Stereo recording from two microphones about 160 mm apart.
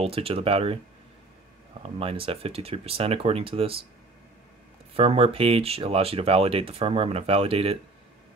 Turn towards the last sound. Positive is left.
turn(degrees=-35)  # may be behind; listen again after turning